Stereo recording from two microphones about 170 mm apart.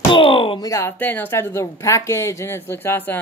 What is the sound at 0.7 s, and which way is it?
Speech, 15° left (ahead or behind).